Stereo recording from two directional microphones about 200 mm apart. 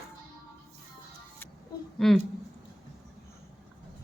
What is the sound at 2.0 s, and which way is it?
Speech, centre (ahead or behind).